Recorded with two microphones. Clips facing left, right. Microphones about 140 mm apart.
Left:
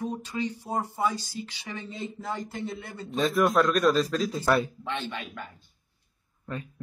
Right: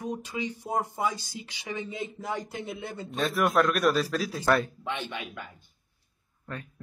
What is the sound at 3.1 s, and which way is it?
A man's voice, centre (ahead or behind).